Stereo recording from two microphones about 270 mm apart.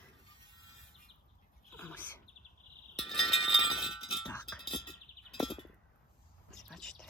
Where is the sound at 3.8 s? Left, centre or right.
Centre.